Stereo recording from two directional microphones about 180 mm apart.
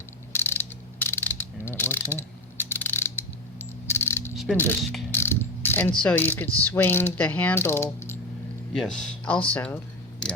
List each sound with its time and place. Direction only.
0.3 s mechanisms: 10° left (ahead or behind)
2.6 s coin: 10° left (ahead or behind)
4.4 s mechanisms: 10° left (ahead or behind)
5.1 s pulleys: 15° left (ahead or behind)
6.0 s mechanisms: 10° left (ahead or behind)